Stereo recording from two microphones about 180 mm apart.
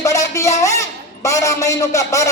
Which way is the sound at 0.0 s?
15° left (ahead or behind).